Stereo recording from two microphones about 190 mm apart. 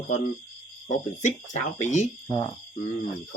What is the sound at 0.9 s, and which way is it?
Speech, 40° left (ahead or behind).